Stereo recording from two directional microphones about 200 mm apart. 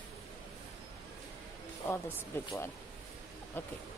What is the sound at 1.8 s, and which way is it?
Speech, 10° left (ahead or behind).